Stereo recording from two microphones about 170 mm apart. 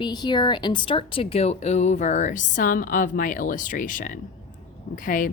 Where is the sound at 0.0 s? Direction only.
25° left (ahead or behind).